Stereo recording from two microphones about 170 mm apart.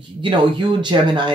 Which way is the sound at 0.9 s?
25° right (ahead or behind).